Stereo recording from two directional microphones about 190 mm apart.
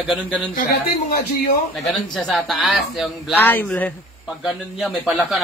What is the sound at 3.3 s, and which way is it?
A man's voice, 10° left (ahead or behind).